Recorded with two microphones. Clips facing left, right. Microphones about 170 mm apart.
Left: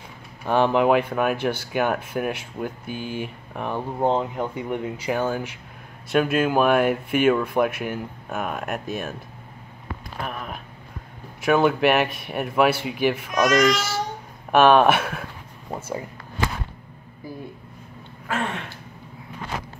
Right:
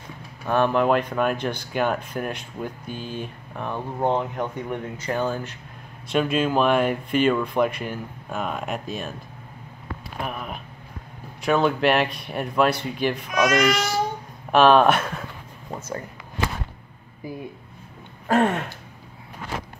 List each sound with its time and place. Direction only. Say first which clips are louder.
0.5 s speech: left 1 dB; 15° left (ahead or behind)
10.2 s speech: right 1 dB; 5° right (ahead or behind)
18.3 s a sound: right 8 dB; 40° right (ahead or behind)